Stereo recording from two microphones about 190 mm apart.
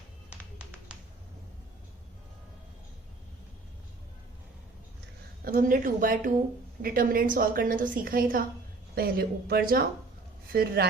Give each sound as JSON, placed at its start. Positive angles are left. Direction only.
{"t": 5.5, "sound": "a woman's voice", "side_deg": -45}